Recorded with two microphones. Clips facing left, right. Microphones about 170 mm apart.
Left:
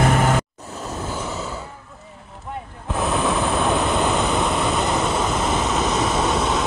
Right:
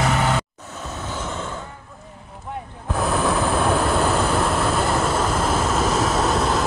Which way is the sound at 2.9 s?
Centre (ahead or behind).